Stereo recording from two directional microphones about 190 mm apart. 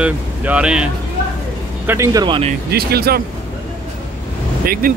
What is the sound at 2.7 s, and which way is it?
Speech, 55° right (ahead or behind).